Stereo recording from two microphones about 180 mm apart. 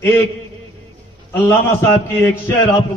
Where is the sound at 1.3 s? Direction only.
15° left (ahead or behind).